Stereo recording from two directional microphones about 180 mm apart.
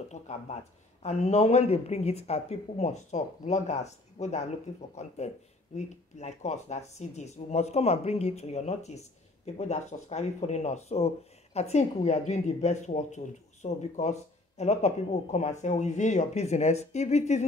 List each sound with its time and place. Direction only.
0.1 s speech: 40° left (ahead or behind)